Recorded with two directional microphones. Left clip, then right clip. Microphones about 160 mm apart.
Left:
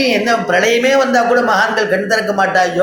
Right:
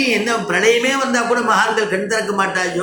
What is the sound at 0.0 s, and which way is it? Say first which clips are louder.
A man's voice: left 4 dB; 45° left (ahead or behind).